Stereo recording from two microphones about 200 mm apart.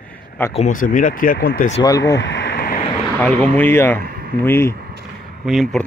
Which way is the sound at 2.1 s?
60° left (ahead or behind).